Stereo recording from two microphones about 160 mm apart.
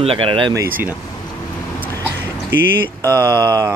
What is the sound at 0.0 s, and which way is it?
Speech, 35° right (ahead or behind).